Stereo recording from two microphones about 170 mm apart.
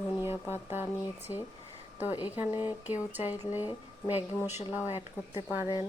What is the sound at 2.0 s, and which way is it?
Speech, 10° right (ahead or behind).